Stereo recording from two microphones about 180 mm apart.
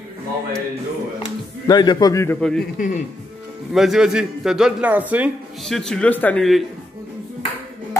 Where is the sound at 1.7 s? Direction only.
25° left (ahead or behind).